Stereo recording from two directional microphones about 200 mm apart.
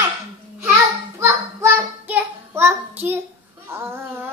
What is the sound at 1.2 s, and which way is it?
Child singing, 10° right (ahead or behind).